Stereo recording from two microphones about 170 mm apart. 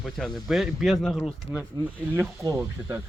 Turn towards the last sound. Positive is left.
turn(degrees=-15)  # may be behind; listen again after turning